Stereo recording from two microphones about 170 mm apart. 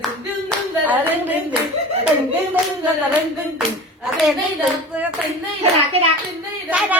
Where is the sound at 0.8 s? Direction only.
10° right (ahead or behind).